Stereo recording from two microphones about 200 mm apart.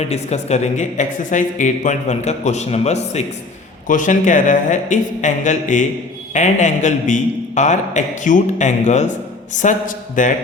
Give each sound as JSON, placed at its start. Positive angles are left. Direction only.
{"t": 0.1, "sound": "speech", "side_deg": 35}